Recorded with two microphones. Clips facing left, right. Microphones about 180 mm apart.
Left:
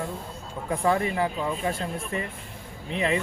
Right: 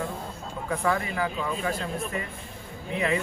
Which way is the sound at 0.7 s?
30° left (ahead or behind).